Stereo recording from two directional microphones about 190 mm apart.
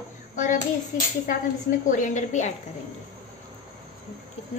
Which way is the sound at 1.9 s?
40° left (ahead or behind).